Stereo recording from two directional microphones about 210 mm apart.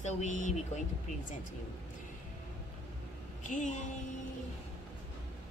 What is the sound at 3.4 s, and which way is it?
Speech, 35° left (ahead or behind).